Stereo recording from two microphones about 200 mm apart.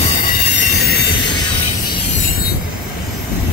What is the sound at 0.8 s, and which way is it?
Train, 55° left (ahead or behind).